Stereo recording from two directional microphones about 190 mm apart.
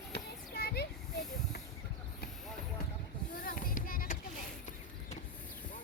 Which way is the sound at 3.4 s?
50° left (ahead or behind).